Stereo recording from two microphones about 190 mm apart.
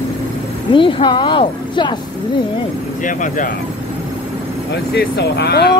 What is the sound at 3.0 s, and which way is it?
Speech, 45° left (ahead or behind).